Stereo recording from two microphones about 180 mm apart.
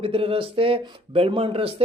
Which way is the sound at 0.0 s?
30° right (ahead or behind).